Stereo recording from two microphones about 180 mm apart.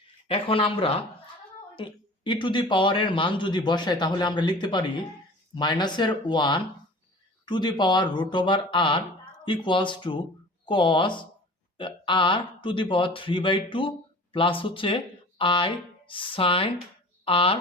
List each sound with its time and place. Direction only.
0.3 s speech: 30° left (ahead or behind)